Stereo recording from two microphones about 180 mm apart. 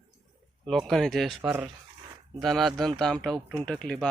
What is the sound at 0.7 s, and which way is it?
Speech, centre (ahead or behind).